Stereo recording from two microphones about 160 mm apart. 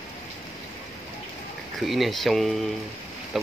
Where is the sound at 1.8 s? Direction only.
Centre (ahead or behind).